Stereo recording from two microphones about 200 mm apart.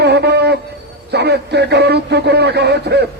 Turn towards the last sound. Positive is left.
turn(degrees=-55)  # may be behind; listen again after turning